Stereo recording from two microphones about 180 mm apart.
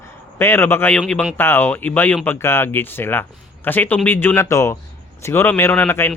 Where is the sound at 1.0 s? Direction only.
Centre (ahead or behind).